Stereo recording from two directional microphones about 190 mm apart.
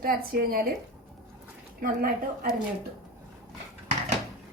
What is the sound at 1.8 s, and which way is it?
Speech, 50° right (ahead or behind).